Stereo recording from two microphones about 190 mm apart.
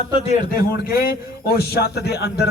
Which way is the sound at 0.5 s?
50° left (ahead or behind).